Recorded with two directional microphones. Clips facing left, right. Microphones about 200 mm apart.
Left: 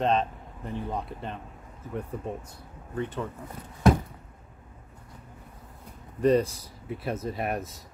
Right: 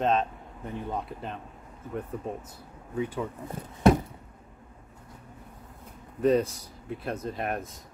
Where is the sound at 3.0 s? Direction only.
10° right (ahead or behind).